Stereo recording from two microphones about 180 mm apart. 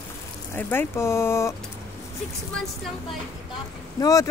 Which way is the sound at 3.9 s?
20° left (ahead or behind).